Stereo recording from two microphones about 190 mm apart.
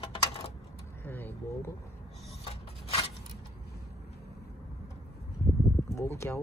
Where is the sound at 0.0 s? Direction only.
30° left (ahead or behind).